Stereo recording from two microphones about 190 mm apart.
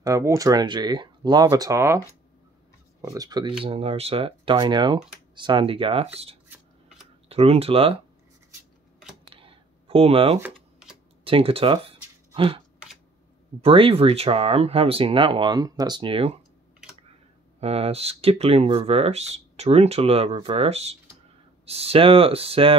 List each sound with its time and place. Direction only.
0.0 s speech: 15° right (ahead or behind)
9.3 s a sound: 30° right (ahead or behind)
10.4 s typing: 5° right (ahead or behind)
11.2 s speech: 30° right (ahead or behind)
12.4 s a sound: 30° right (ahead or behind)
13.6 s speech: 30° right (ahead or behind)
17.6 s speech: 30° right (ahead or behind)